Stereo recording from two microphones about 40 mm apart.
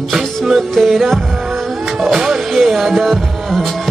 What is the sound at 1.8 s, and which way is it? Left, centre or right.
Music, centre.